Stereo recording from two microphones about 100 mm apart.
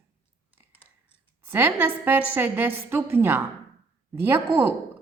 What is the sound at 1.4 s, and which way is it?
A woman's voice, 20° right (ahead or behind).